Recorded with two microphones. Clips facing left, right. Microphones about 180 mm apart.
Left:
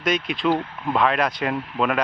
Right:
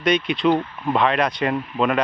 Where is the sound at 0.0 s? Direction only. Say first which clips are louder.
Right 4 dB; centre (ahead or behind).